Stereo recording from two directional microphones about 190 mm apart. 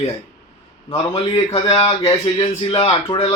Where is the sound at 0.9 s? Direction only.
25° left (ahead or behind).